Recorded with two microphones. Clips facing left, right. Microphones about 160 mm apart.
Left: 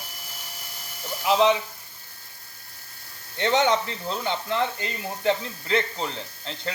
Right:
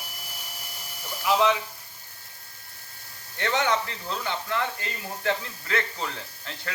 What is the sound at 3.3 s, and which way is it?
Speech, 20° left (ahead or behind).